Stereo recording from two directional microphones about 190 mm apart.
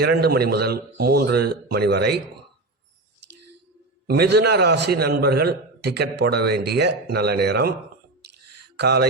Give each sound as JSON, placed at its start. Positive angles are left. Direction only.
{"t": 0.0, "sound": "a man's voice", "side_deg": -55}
{"t": 4.0, "sound": "a man's voice", "side_deg": -55}
{"t": 8.8, "sound": "a man's voice", "side_deg": -60}